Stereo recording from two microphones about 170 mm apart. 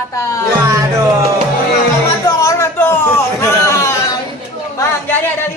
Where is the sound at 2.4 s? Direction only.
15° left (ahead or behind).